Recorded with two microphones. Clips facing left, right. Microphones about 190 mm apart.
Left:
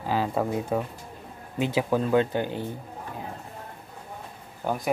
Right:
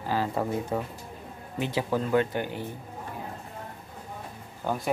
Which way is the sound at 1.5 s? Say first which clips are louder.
Left 3 dB; 15° left (ahead or behind).